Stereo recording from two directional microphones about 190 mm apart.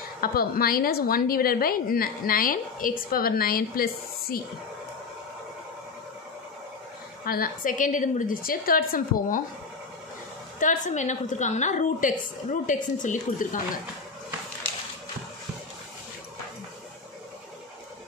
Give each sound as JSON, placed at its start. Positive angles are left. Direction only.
{"t": 0.2, "sound": "a woman's voice", "side_deg": 50}
{"t": 7.2, "sound": "a woman's voice", "side_deg": 50}
{"t": 10.6, "sound": "a woman's voice", "side_deg": 40}